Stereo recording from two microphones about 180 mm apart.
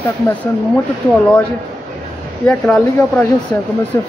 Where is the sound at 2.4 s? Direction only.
5° left (ahead or behind).